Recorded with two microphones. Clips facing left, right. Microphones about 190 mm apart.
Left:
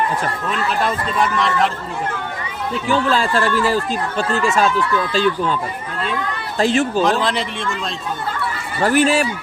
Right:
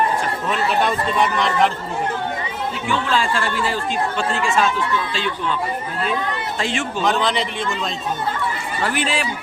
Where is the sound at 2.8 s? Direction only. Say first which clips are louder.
Left 3 dB; 40° left (ahead or behind).